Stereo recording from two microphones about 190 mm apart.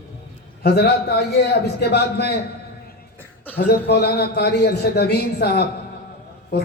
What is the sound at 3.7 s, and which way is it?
A man's voice, 60° left (ahead or behind).